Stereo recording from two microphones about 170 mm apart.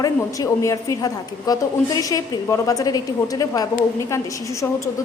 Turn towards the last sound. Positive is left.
turn(degrees=15)  # may be behind; listen again after turning